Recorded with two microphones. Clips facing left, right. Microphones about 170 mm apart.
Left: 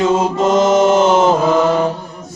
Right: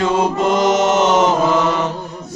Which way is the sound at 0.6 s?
30° left (ahead or behind).